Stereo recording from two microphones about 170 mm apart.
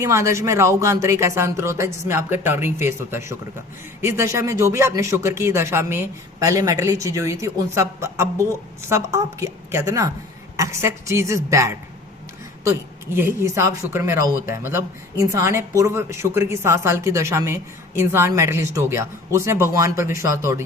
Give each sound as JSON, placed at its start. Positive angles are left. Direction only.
{"t": 0.0, "sound": "a woman's voice", "side_deg": -15}
{"t": 13.1, "sound": "a woman's voice", "side_deg": -15}